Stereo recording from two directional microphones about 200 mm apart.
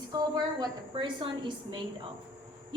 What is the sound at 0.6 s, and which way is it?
A woman's voice, 25° right (ahead or behind).